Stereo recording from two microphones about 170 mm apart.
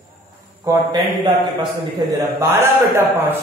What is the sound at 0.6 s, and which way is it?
Speech, 25° right (ahead or behind).